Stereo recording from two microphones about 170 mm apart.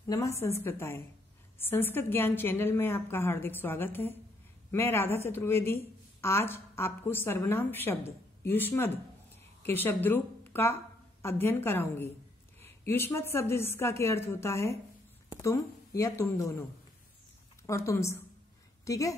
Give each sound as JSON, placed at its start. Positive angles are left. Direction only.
{"t": 0.0, "sound": "a woman's voice", "side_deg": 20}
{"t": 17.6, "sound": "a woman's voice", "side_deg": 15}